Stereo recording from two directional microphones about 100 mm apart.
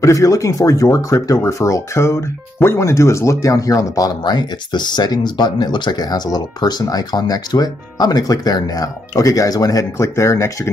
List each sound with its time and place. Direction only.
0.0 s speech: 30° left (ahead or behind)